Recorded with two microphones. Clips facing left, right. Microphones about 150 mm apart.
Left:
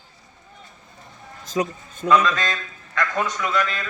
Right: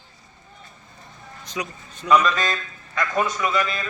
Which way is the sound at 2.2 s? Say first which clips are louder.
Right 1 dB; 5° right (ahead or behind).